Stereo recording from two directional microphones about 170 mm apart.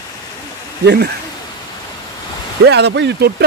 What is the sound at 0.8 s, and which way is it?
Speech, 70° right (ahead or behind).